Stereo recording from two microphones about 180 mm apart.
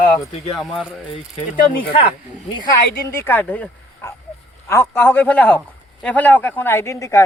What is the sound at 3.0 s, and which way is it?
Speech, 15° left (ahead or behind).